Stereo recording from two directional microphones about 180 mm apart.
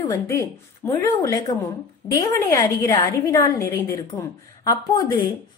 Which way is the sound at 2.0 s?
25° left (ahead or behind).